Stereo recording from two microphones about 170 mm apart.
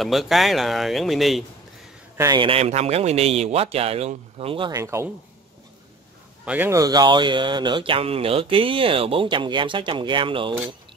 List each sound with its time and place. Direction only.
0.0 s speech: centre (ahead or behind)
2.1 s a man's voice: 25° right (ahead or behind)
6.4 s speech: 10° right (ahead or behind)
6.7 s speech: 20° right (ahead or behind)